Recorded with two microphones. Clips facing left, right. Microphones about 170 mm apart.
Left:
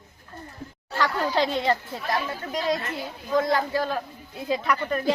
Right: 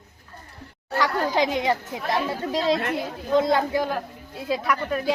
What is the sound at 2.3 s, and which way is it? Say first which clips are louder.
Speech: right 4 dB; 25° right (ahead or behind).